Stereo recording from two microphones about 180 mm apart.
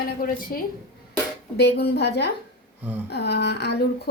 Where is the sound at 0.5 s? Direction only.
55° left (ahead or behind).